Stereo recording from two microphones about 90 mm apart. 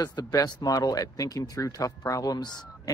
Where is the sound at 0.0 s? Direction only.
50° left (ahead or behind).